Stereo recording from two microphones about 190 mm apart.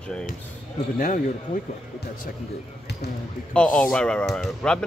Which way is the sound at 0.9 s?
45° left (ahead or behind).